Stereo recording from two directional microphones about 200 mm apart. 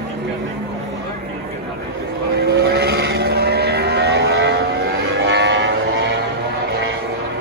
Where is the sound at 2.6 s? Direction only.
50° right (ahead or behind).